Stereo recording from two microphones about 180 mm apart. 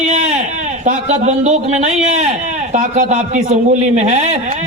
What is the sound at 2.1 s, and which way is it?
A man's voice, 40° right (ahead or behind).